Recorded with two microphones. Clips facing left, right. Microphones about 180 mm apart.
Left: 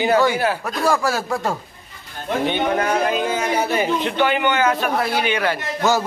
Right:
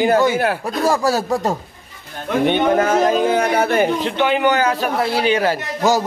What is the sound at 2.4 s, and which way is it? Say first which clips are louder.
Speech: right 5 dB; 50° right (ahead or behind).